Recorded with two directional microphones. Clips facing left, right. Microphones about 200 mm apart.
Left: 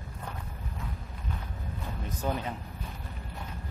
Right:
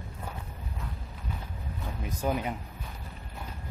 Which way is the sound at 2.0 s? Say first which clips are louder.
Right 3 dB; 10° right (ahead or behind).